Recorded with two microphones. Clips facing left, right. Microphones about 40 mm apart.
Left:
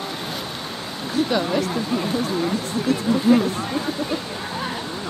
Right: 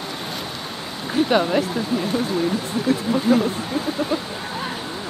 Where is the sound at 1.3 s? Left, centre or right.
Right.